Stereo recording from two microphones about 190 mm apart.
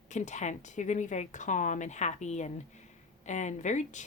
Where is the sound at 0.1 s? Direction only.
40° left (ahead or behind).